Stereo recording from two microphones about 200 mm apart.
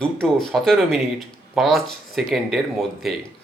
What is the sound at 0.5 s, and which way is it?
Speech, centre (ahead or behind).